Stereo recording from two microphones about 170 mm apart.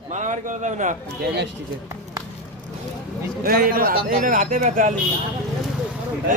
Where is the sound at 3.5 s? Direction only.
60° right (ahead or behind).